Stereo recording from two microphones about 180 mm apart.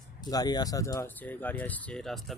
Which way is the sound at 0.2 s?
20° left (ahead or behind).